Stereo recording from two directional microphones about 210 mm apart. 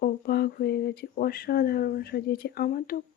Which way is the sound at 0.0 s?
50° left (ahead or behind).